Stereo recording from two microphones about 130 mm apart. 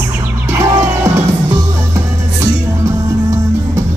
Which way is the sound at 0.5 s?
25° right (ahead or behind).